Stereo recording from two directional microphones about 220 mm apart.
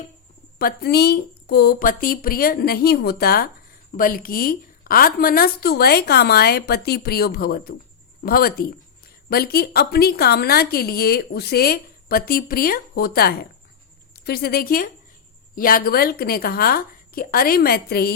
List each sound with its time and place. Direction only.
0.6 s a woman's voice: 45° left (ahead or behind)